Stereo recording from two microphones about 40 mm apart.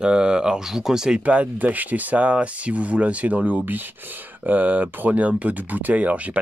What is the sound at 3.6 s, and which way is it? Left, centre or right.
Speech, right.